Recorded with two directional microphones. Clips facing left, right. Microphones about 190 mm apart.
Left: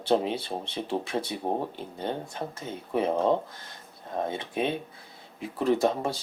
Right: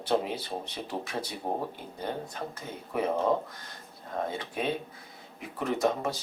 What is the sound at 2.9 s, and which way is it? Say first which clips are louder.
Speech: left 3 dB; 25° left (ahead or behind).